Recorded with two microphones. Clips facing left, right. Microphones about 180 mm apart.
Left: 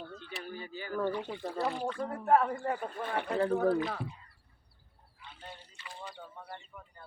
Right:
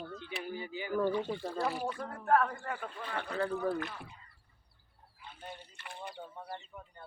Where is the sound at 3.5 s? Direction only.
65° left (ahead or behind).